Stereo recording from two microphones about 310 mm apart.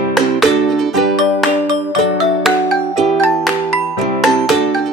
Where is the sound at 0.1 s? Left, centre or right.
Centre.